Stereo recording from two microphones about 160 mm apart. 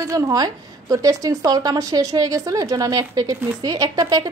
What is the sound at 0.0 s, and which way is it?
A woman's voice, 20° right (ahead or behind).